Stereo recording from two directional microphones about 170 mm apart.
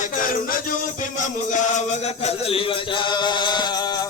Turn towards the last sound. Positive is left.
turn(degrees=25)  # may be behind; listen again after turning